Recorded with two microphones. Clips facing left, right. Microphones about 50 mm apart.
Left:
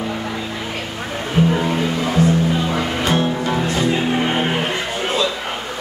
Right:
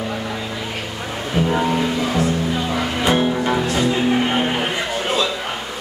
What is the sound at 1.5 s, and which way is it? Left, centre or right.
Music, centre.